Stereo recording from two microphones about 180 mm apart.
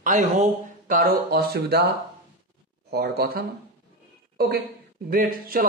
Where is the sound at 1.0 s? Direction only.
55° right (ahead or behind).